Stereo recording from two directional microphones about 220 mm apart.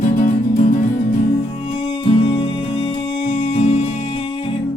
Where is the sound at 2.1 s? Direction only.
25° left (ahead or behind).